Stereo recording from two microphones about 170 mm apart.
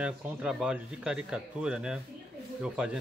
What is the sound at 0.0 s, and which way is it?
Speech, 5° right (ahead or behind).